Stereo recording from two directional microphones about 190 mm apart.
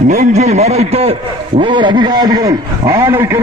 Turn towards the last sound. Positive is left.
turn(degrees=-15)  # may be behind; listen again after turning